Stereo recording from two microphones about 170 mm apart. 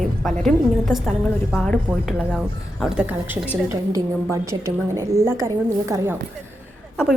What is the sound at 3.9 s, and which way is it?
A woman's voice, 20° right (ahead or behind).